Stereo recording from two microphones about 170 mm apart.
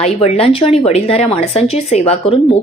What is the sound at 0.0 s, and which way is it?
Speech, 35° left (ahead or behind).